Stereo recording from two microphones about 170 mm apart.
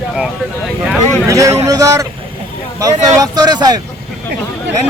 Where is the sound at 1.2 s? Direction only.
20° right (ahead or behind).